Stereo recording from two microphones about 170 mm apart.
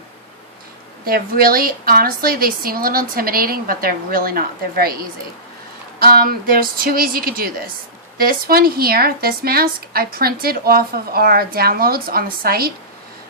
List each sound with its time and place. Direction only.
1.0 s speech: 60° right (ahead or behind)
6.0 s speech: 60° right (ahead or behind)